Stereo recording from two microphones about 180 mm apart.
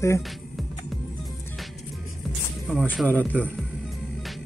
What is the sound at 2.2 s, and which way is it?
Speech, 5° left (ahead or behind).